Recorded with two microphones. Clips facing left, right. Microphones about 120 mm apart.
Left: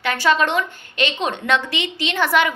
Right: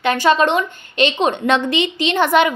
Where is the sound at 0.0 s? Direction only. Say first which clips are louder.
Right 4 dB; 20° right (ahead or behind).